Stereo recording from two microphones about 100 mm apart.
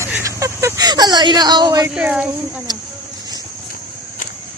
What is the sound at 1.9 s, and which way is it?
Speech, 10° right (ahead or behind).